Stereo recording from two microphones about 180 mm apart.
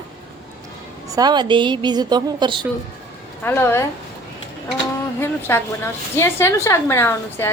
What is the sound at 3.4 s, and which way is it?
Speech, 10° left (ahead or behind).